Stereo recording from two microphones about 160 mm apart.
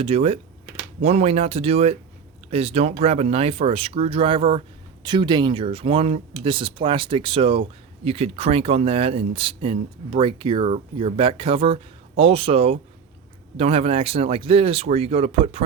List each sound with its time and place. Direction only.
0.0 s speech: 40° right (ahead or behind)